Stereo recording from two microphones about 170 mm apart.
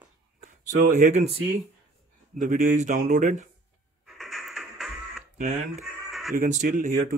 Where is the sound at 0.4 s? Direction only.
45° right (ahead or behind).